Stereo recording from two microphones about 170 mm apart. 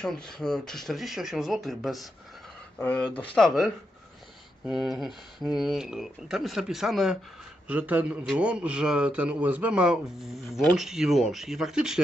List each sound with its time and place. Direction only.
0.0 s a man's voice: 5° left (ahead or behind)